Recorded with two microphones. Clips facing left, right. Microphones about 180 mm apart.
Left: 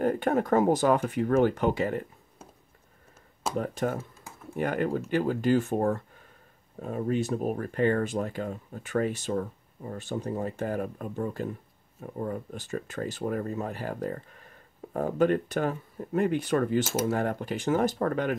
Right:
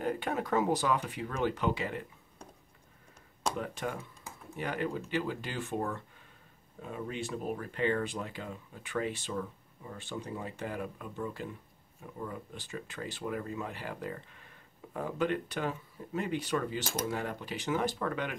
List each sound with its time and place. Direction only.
0.0 s speech: 50° left (ahead or behind)
3.5 s speech: 45° left (ahead or behind)